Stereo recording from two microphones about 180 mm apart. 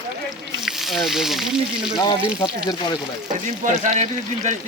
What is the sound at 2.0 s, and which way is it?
Speech, 25° left (ahead or behind).